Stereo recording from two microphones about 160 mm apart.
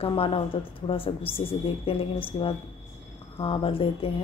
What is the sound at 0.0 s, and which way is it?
A woman's voice, 35° left (ahead or behind).